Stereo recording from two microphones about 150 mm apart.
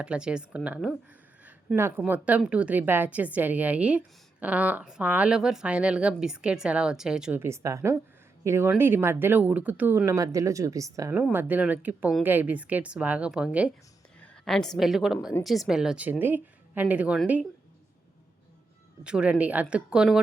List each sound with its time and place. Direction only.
0.0 s a woman's voice: 5° right (ahead or behind)
7.4 s a woman's voice: 20° right (ahead or behind)
19.0 s a woman's voice: 5° right (ahead or behind)